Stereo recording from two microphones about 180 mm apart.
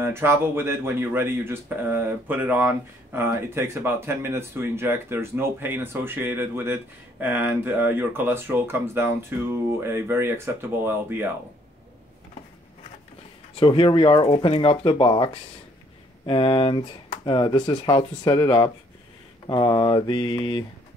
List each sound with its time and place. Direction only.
0.0 s speech: 15° right (ahead or behind)
13.6 s speech: 25° left (ahead or behind)